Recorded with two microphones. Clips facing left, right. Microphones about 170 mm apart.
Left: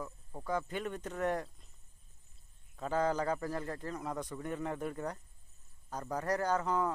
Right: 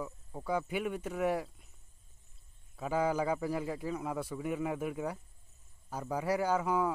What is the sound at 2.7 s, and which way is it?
Speech, 10° right (ahead or behind).